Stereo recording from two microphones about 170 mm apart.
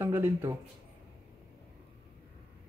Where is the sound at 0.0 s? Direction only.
15° right (ahead or behind).